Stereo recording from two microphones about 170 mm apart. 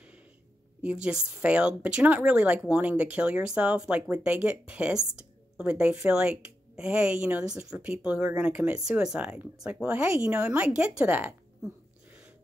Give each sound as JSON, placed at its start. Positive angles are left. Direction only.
{"t": 1.0, "sound": "a woman's voice", "side_deg": -5}